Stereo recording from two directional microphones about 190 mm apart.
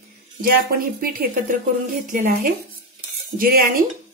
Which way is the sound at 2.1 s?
45° right (ahead or behind).